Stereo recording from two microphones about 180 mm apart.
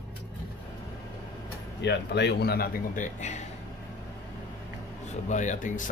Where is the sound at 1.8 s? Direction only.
75° left (ahead or behind); by 3.5 s 40° left (ahead or behind).